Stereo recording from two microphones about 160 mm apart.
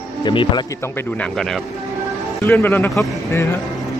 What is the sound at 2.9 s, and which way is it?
Speech, centre (ahead or behind).